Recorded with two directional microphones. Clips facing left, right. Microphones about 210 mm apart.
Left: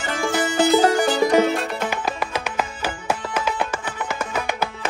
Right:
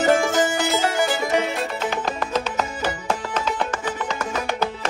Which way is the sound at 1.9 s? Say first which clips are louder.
Right 1 dB; 10° left (ahead or behind).